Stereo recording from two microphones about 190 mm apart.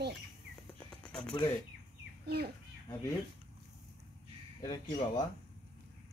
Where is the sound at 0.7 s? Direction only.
5° left (ahead or behind).